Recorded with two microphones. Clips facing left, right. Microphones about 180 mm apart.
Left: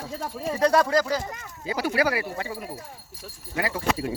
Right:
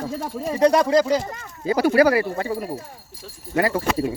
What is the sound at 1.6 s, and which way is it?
Speech, 45° right (ahead or behind).